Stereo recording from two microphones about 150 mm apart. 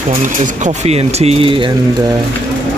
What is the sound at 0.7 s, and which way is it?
Speech, 45° right (ahead or behind).